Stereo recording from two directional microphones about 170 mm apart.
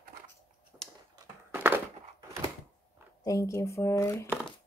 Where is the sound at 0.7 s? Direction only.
5° right (ahead or behind).